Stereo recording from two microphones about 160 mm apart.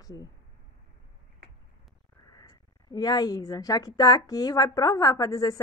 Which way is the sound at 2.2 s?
25° left (ahead or behind).